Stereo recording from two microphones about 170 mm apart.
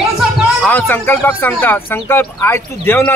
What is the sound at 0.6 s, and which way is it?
Speech, 10° left (ahead or behind).